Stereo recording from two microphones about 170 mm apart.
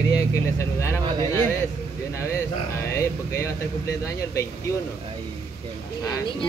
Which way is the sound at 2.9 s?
15° left (ahead or behind).